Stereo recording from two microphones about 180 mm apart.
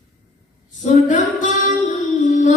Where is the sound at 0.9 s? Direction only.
45° left (ahead or behind).